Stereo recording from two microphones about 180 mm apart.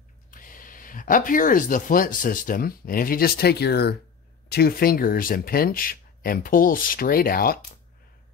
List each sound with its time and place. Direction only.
0.3 s speech: 50° left (ahead or behind)